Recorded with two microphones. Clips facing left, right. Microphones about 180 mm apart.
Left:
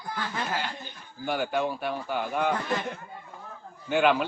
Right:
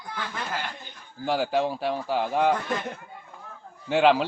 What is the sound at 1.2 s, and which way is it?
A man's voice, 30° right (ahead or behind).